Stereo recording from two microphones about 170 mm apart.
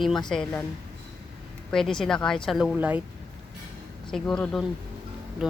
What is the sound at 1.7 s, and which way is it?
Speech, 5° left (ahead or behind).